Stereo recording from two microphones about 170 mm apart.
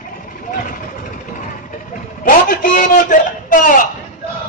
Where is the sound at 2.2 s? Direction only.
55° left (ahead or behind).